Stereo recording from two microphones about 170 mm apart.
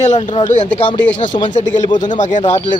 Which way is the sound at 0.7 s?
30° left (ahead or behind).